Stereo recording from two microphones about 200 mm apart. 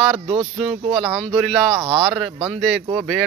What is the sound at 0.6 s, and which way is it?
Speech, centre (ahead or behind).